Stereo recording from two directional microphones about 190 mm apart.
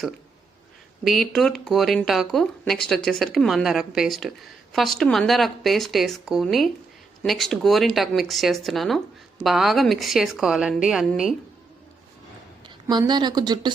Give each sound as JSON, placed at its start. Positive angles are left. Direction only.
{"t": 1.0, "sound": "speech", "side_deg": 0}
{"t": 12.6, "sound": "a woman's voice", "side_deg": -20}